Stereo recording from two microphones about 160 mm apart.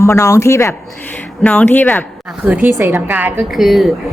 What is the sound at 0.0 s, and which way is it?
Speech, 15° left (ahead or behind).